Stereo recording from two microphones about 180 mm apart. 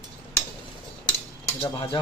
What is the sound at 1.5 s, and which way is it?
Speech, 30° left (ahead or behind).